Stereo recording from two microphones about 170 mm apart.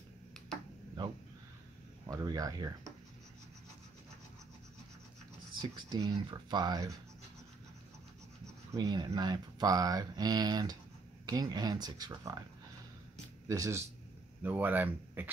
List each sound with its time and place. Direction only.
2.0 s speech: 20° right (ahead or behind)
5.6 s speech: 25° right (ahead or behind)
8.7 s speech: 25° right (ahead or behind)
13.5 s speech: 15° right (ahead or behind)